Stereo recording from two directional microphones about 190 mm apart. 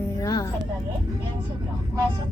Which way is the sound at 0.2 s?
20° left (ahead or behind).